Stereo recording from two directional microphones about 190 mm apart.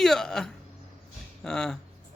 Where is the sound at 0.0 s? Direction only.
Centre (ahead or behind).